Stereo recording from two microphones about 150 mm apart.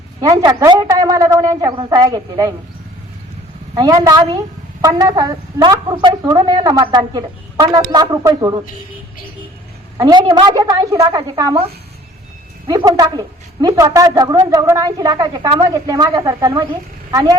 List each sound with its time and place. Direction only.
0.2 s a woman's voice: 25° right (ahead or behind)
3.8 s a woman's voice: 25° right (ahead or behind)
10.0 s a woman's voice: 30° right (ahead or behind)
12.6 s a woman's voice: 25° right (ahead or behind)